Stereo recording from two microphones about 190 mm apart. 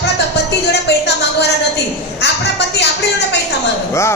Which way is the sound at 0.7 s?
60° left (ahead or behind).